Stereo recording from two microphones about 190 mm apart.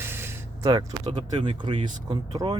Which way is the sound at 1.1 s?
30° right (ahead or behind).